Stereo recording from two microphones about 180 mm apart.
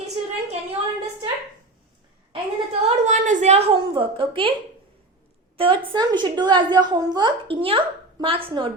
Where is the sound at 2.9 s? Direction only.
40° right (ahead or behind).